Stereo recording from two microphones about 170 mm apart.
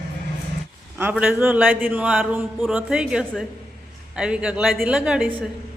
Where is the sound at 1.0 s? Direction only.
10° right (ahead or behind).